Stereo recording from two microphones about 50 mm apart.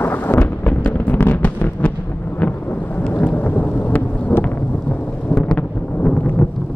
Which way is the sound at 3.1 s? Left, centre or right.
Left.